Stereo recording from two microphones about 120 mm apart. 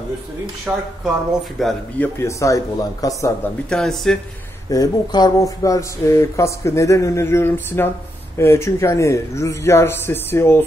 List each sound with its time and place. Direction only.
0.7 s speech: 10° right (ahead or behind)
1.6 s speech: centre (ahead or behind)
2.0 s speech: 20° left (ahead or behind)
3.7 s speech: centre (ahead or behind)
4.6 s speech: 35° left (ahead or behind)